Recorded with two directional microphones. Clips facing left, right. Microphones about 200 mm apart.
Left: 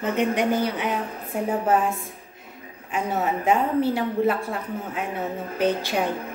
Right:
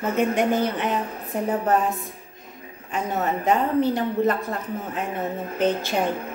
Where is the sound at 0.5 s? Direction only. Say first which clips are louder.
Right 1 dB; 10° left (ahead or behind).